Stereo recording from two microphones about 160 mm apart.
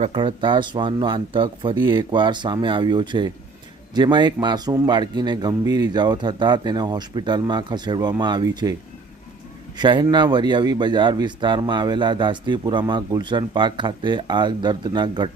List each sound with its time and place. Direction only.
0.0 s speech: 30° right (ahead or behind)
9.7 s speech: 25° right (ahead or behind)